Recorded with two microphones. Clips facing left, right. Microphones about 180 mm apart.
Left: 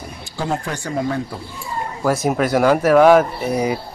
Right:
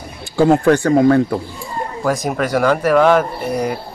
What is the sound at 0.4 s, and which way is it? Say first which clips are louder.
Speech: right 12 dB; 60° right (ahead or behind).